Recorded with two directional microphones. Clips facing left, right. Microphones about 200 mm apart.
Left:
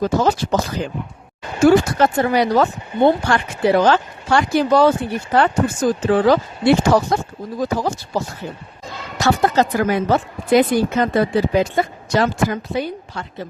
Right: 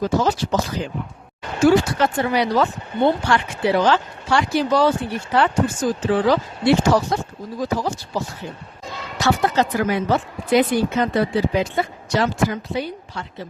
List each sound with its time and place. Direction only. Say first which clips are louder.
0.0 s speech: left 2 dB; 50° left (ahead or behind)
9.2 s speech: left 3 dB; 45° left (ahead or behind)